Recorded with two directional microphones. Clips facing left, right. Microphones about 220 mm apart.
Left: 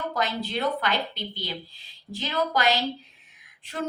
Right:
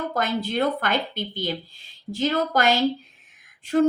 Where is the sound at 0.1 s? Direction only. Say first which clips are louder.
Right 3 dB; 50° right (ahead or behind).